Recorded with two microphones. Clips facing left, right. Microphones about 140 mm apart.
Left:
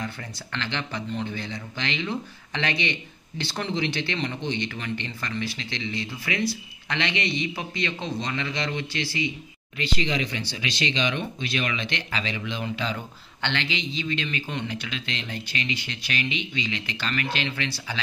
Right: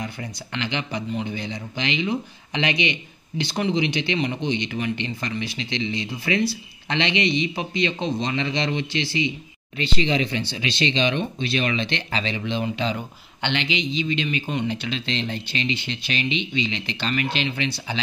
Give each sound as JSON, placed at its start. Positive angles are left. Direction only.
{"t": 0.0, "sound": "speech", "side_deg": -15}